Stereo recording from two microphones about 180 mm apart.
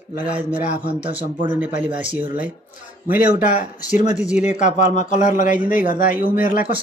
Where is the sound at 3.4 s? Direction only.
45° left (ahead or behind).